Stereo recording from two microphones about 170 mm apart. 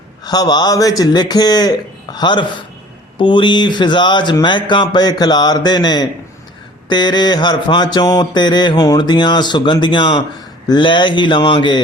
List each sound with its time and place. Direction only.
0.3 s mantra: 25° left (ahead or behind)